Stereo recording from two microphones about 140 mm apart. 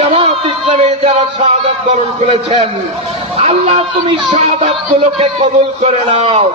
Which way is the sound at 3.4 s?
45° right (ahead or behind).